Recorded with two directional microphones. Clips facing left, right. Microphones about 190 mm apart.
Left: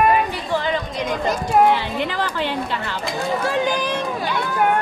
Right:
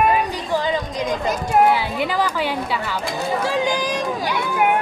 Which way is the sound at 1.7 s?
10° right (ahead or behind).